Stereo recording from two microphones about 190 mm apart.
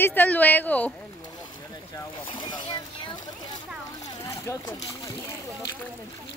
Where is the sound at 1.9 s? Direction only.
25° left (ahead or behind).